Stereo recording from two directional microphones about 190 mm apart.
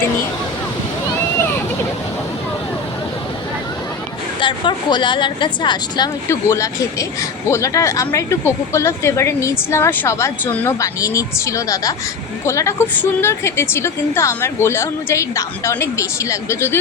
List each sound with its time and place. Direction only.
4.4 s a woman's voice: 25° left (ahead or behind)